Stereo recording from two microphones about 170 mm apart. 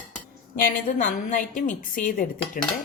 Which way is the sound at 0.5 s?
50° left (ahead or behind).